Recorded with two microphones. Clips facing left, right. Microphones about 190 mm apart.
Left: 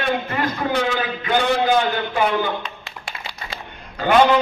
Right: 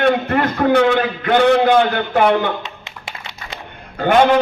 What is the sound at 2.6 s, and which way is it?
Music, 20° right (ahead or behind).